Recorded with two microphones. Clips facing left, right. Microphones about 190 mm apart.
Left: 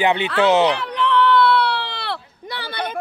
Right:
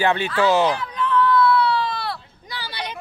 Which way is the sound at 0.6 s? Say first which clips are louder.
Left 3 dB; 70° left (ahead or behind).